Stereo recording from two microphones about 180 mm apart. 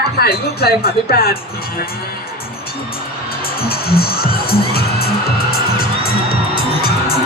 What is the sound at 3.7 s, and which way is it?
Music, 60° left (ahead or behind).